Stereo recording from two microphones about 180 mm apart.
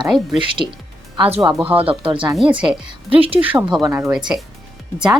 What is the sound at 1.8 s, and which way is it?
A woman's voice, 30° right (ahead or behind).